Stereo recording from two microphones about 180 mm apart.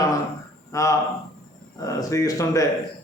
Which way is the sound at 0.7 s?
15° left (ahead or behind).